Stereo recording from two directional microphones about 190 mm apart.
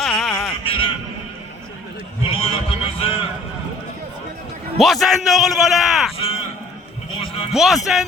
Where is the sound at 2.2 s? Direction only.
30° left (ahead or behind).